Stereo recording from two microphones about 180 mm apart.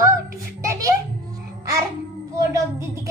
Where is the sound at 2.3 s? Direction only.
20° right (ahead or behind).